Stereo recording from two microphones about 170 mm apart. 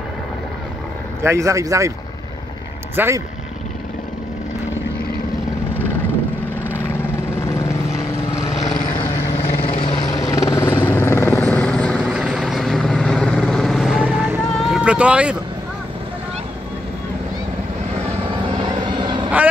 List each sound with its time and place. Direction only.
1.2 s speech: 15° right (ahead or behind)
3.0 s speech: 10° right (ahead or behind)
9.4 s vehicle: 35° left (ahead or behind); by 11.4 s 15° left (ahead or behind)
11.4 s helicopter: 5° left (ahead or behind)
12.0 s vehicle: 5° right (ahead or behind)
18.3 s vehicle: 30° right (ahead or behind)